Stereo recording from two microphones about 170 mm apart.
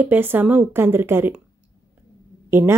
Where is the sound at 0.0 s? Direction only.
10° right (ahead or behind).